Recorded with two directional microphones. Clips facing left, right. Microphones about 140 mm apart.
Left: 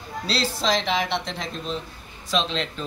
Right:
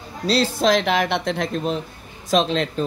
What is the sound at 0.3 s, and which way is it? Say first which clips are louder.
Speech: right 6 dB; 50° right (ahead or behind).